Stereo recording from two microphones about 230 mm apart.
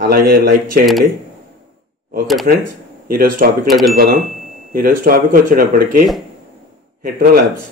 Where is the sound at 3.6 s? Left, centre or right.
Centre.